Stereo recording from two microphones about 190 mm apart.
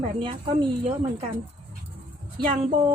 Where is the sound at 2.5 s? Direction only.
30° right (ahead or behind).